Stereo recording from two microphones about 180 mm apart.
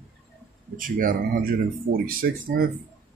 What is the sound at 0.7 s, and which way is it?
Speech, 50° right (ahead or behind).